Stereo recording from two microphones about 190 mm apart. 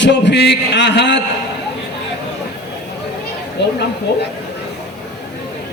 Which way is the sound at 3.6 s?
65° left (ahead or behind).